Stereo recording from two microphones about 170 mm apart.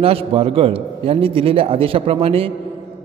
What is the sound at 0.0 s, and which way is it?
A man's voice, 35° right (ahead or behind).